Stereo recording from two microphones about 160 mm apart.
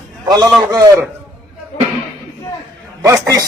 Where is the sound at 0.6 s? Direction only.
20° right (ahead or behind).